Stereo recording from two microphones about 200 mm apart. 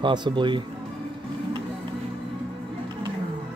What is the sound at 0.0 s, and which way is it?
Speech, 20° right (ahead or behind).